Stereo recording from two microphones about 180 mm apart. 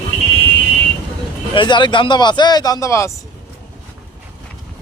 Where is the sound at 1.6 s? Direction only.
25° left (ahead or behind).